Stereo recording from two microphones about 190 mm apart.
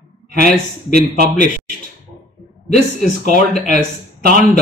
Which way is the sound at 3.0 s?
40° left (ahead or behind).